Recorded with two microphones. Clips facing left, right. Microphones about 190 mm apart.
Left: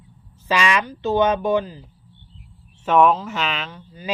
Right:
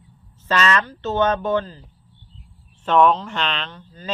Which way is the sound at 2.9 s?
5° left (ahead or behind).